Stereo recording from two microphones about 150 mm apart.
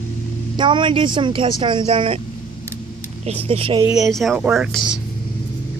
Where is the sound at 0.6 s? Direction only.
30° right (ahead or behind).